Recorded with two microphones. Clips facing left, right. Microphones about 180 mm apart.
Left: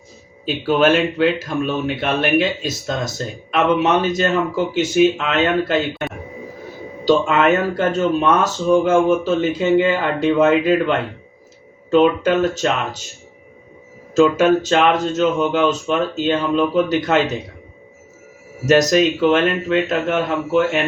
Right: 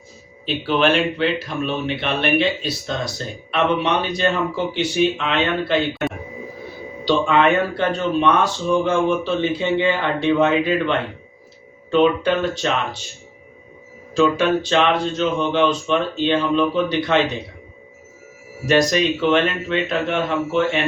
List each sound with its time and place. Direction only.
0.4 s speech: 45° left (ahead or behind)
7.0 s speech: 45° left (ahead or behind)
14.1 s speech: 45° left (ahead or behind)
18.6 s speech: 40° left (ahead or behind)